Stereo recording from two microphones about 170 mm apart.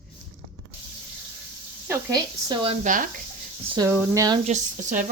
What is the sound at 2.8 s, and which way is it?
Speech, 50° right (ahead or behind).